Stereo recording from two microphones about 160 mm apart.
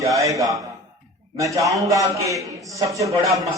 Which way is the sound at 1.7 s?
20° right (ahead or behind).